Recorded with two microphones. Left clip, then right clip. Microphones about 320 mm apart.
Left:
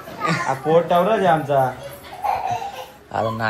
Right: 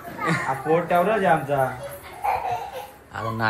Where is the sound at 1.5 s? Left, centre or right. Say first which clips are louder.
Left 5 dB; centre.